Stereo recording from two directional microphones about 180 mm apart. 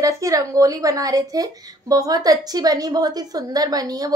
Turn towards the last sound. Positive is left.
turn(degrees=-20)  # may be behind; listen again after turning